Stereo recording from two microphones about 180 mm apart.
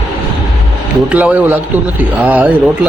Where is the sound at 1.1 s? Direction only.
10° right (ahead or behind).